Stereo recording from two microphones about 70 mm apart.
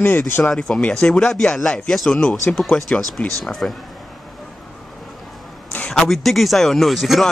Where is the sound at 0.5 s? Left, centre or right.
Centre.